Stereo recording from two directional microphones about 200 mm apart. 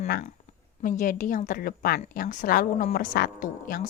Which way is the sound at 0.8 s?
40° left (ahead or behind).